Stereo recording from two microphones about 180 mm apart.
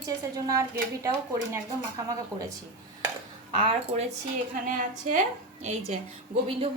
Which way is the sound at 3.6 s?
30° right (ahead or behind).